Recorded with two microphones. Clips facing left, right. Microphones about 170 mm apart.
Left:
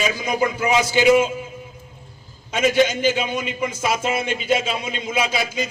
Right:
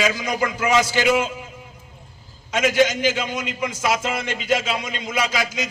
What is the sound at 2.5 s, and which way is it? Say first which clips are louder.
A man's voice: left 1 dB; 90° right.